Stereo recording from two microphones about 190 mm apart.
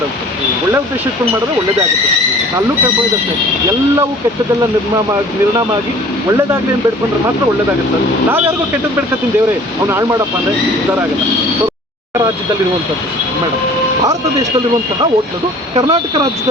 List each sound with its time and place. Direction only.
9.9 s speech: 15° right (ahead or behind)
15.7 s speech: 25° right (ahead or behind)